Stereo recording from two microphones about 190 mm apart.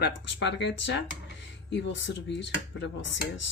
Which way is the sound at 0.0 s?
65° left (ahead or behind).